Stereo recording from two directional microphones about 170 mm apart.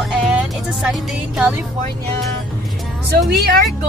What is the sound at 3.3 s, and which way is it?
Speech, 70° right (ahead or behind).